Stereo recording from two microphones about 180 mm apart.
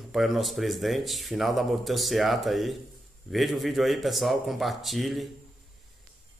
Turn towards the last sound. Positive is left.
turn(degrees=0)  # may be behind; listen again after turning